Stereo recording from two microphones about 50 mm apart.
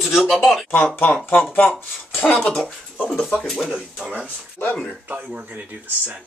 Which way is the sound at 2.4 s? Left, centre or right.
Centre.